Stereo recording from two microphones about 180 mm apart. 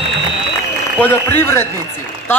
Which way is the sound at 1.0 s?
15° left (ahead or behind).